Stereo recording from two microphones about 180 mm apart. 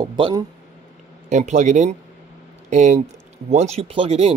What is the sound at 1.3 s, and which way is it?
Speech, 40° right (ahead or behind).